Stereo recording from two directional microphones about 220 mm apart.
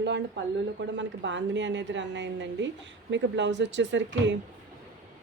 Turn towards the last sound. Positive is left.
turn(degrees=-55)  # may be behind; listen again after turning